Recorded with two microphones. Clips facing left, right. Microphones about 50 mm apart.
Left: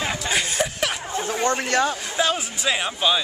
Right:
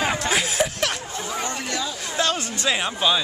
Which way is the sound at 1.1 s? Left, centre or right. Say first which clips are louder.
Left 5 dB; left.